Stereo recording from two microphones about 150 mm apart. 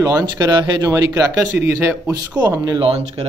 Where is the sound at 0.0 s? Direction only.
20° right (ahead or behind).